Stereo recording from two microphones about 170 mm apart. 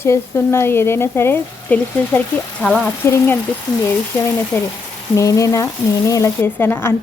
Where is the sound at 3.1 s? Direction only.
10° left (ahead or behind).